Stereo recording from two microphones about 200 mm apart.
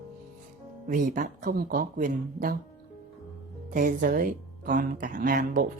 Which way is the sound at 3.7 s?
40° right (ahead or behind).